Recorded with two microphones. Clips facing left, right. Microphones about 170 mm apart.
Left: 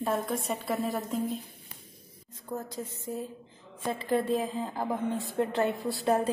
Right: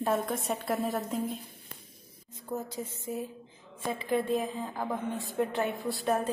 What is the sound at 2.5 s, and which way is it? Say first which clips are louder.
Speech: right 1 dB; 10° right (ahead or behind).